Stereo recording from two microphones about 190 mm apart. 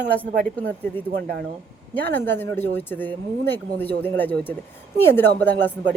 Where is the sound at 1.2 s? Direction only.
50° right (ahead or behind).